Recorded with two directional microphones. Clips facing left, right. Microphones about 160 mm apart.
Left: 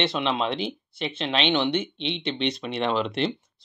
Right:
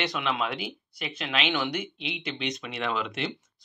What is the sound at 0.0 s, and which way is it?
Speech, 30° left (ahead or behind).